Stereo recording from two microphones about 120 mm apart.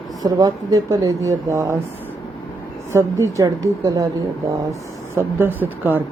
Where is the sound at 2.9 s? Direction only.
25° right (ahead or behind).